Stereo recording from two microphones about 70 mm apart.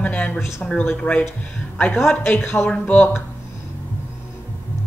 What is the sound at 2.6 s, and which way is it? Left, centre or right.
Speech, centre.